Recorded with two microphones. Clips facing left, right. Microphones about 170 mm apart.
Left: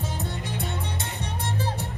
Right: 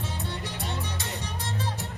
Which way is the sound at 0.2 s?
50° left (ahead or behind).